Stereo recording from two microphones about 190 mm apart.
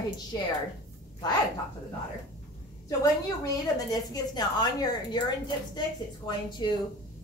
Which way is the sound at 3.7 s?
20° left (ahead or behind).